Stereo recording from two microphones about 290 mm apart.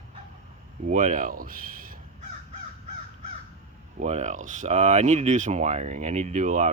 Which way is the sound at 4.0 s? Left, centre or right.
Right.